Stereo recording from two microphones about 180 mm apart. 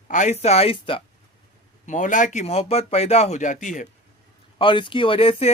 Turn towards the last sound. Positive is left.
turn(degrees=30)  # may be behind; listen again after turning